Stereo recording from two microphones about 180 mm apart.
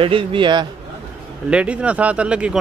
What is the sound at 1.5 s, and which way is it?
Speech, 5° right (ahead or behind).